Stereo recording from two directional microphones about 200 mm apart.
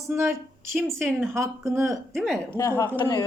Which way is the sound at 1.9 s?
Centre (ahead or behind).